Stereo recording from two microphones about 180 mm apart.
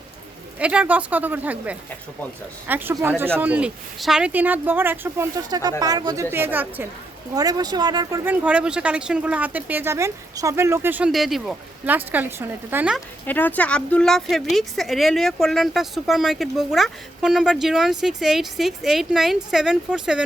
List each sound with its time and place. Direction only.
0.6 s speech: 5° right (ahead or behind)
7.3 s speech: 20° right (ahead or behind)
13.2 s a woman's voice: 10° left (ahead or behind)